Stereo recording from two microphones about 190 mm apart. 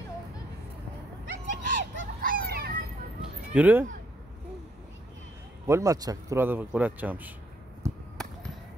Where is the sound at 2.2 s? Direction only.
55° right (ahead or behind).